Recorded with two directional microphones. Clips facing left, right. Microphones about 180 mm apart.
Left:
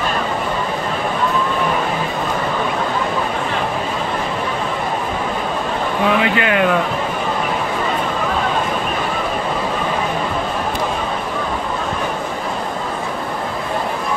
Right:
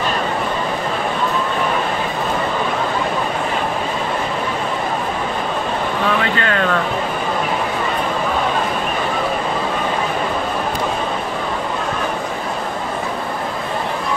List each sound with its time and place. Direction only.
6.2 s speech: 15° left (ahead or behind)